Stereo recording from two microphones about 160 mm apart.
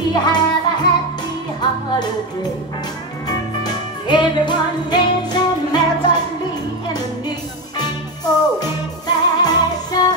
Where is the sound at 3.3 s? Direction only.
25° left (ahead or behind).